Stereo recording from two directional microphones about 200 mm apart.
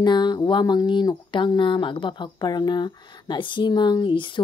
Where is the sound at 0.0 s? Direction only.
20° left (ahead or behind).